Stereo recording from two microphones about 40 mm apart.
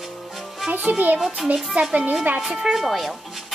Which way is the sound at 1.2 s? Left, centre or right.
Centre.